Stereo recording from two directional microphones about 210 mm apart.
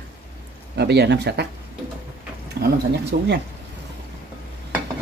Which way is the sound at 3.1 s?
45° right (ahead or behind).